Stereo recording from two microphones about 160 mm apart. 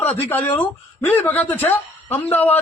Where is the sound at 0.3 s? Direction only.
10° left (ahead or behind).